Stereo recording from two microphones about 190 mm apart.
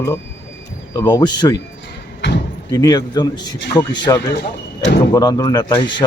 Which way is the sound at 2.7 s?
20° left (ahead or behind).